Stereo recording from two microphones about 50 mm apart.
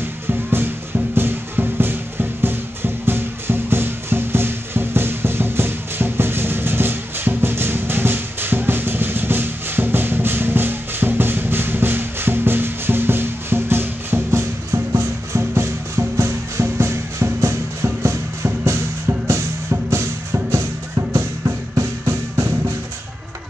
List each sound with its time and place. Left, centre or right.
0.3 s music: right